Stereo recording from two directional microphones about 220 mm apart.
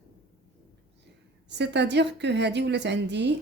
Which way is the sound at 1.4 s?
50° right (ahead or behind).